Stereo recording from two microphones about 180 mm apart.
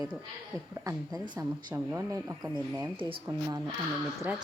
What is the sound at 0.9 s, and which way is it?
Speech, 20° right (ahead or behind).